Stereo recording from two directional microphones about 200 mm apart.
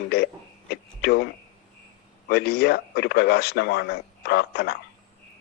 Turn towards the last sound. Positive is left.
turn(degrees=55)  # may be behind; listen again after turning